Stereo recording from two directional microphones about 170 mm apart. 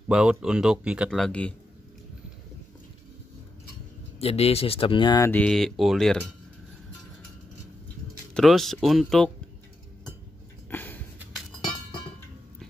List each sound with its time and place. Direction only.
0.1 s speech: 5° right (ahead or behind)
4.2 s speech: 35° left (ahead or behind)
5.3 s speech: 5° left (ahead or behind)
8.4 s speech: centre (ahead or behind)
10.7 s a sound: 10° left (ahead or behind)